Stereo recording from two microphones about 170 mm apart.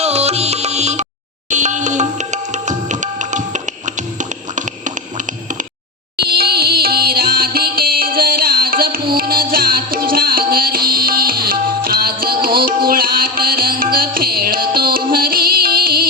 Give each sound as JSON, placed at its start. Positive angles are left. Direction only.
{"t": 0.0, "sound": "music", "side_deg": -40}
{"t": 6.1, "sound": "music", "side_deg": -65}